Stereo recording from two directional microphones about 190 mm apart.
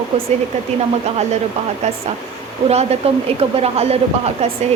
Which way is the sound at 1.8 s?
35° right (ahead or behind).